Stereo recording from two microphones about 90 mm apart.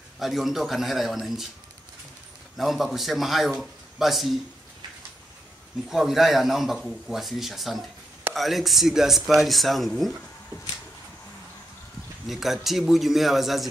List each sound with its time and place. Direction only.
0.2 s a man's voice: centre (ahead or behind)
2.5 s a man's voice: centre (ahead or behind)
5.9 s a man's voice: 5° right (ahead or behind)
12.3 s a man's voice: centre (ahead or behind)